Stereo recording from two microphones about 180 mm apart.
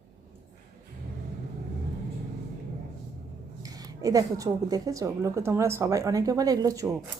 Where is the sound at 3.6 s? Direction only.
20° right (ahead or behind).